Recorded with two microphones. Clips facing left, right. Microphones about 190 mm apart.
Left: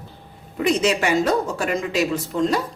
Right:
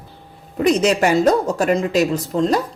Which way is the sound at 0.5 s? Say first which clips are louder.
Right 4 dB; 40° right (ahead or behind).